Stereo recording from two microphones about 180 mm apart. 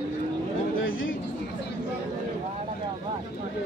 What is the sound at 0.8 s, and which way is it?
Speech, 90° left.